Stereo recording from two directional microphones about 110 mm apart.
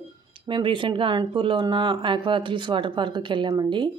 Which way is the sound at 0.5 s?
50° right (ahead or behind).